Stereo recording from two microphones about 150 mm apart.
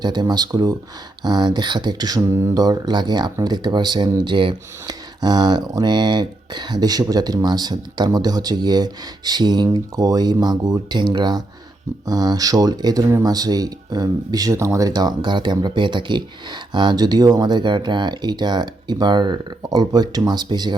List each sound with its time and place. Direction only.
0.0 s speech: 30° right (ahead or behind)